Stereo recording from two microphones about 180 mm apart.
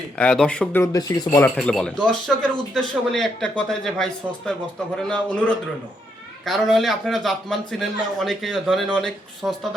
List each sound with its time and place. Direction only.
0.2 s a man's voice: 5° left (ahead or behind)
0.8 s speech: 20° left (ahead or behind)
1.5 s a man's voice: 5° left (ahead or behind)